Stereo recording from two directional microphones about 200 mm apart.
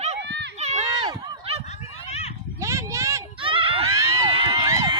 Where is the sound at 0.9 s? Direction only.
20° right (ahead or behind).